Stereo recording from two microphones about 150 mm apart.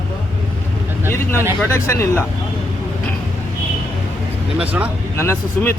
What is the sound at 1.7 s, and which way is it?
Speech, 15° left (ahead or behind).